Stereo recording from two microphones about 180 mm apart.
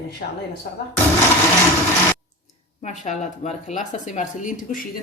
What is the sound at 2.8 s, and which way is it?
Speech, 40° left (ahead or behind).